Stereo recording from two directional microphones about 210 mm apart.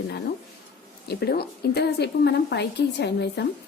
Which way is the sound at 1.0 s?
50° left (ahead or behind).